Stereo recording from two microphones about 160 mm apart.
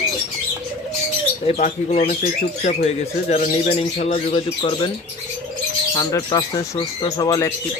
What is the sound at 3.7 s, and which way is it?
Speech, 40° left (ahead or behind).